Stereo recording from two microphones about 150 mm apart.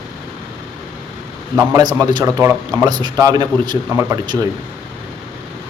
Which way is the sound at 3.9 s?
15° right (ahead or behind).